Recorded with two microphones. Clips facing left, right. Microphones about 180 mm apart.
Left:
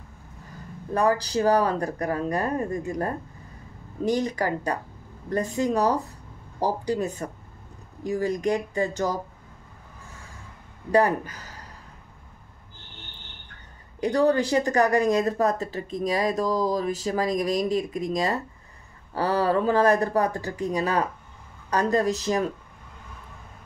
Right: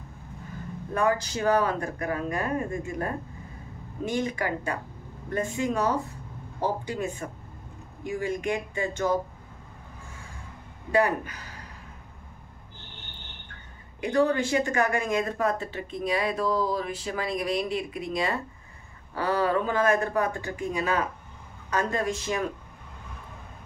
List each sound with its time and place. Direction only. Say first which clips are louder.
0.9 s a woman's voice: left 3 dB; 35° left (ahead or behind)
10.9 s a woman's voice: left 3 dB; 40° left (ahead or behind)
14.0 s a woman's voice: left 3 dB; 35° left (ahead or behind)